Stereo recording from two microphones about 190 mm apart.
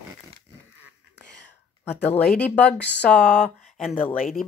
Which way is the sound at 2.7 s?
60° left (ahead or behind).